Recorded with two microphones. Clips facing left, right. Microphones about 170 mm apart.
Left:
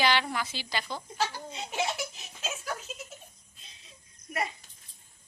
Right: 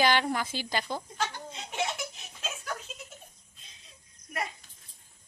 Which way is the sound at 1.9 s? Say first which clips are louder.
Left 2 dB; 5° left (ahead or behind).